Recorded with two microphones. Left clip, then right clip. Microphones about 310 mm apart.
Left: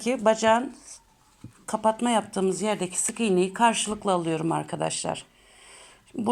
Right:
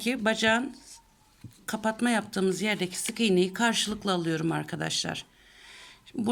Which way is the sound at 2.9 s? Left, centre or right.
Right.